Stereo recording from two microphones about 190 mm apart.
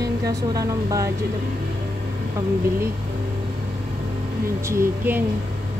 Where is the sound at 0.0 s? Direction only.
20° right (ahead or behind).